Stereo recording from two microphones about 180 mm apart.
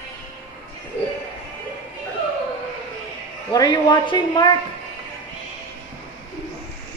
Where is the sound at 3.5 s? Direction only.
20° left (ahead or behind).